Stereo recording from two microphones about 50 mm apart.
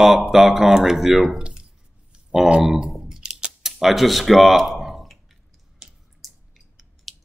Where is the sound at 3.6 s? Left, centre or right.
Centre.